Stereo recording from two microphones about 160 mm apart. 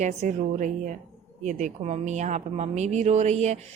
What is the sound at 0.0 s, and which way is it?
Speech, 50° right (ahead or behind).